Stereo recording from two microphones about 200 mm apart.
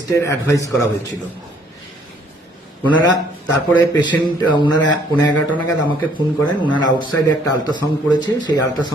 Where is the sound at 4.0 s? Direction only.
20° left (ahead or behind).